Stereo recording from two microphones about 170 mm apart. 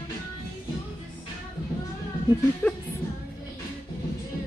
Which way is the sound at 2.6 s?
10° left (ahead or behind).